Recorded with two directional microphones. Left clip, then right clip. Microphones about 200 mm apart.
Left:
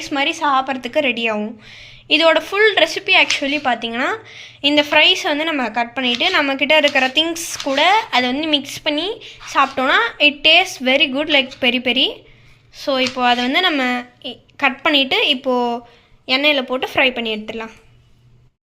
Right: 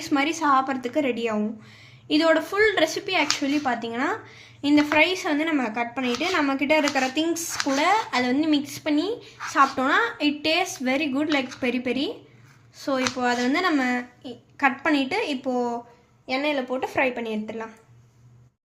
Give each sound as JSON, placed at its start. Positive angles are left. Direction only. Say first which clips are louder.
{"t": 0.0, "sound": "a woman's voice", "louder": "left 5 dB", "side_deg": 10}